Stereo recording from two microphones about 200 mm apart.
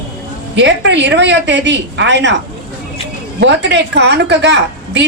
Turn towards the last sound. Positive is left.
turn(degrees=-60)  # may be behind; listen again after turning